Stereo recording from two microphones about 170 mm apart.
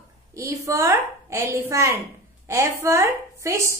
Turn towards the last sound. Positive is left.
turn(degrees=-15)  # may be behind; listen again after turning